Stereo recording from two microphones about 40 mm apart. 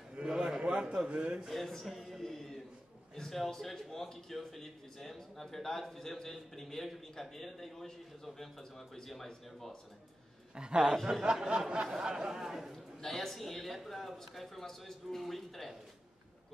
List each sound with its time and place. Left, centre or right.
0.3 s a sound: right
1.5 s a man's voice: centre
10.5 s a man's voice: right
13.0 s a man's voice: centre